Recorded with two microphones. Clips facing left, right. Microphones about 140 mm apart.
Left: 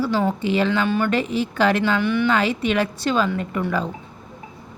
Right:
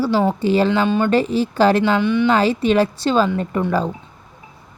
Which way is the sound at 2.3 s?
35° right (ahead or behind).